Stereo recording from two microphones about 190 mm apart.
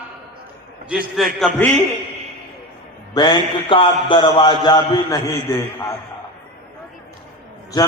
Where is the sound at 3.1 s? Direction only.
25° left (ahead or behind).